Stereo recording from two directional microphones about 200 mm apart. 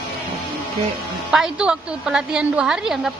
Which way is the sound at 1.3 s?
5° right (ahead or behind).